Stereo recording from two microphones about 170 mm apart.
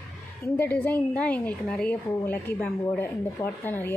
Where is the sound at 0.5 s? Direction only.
10° left (ahead or behind).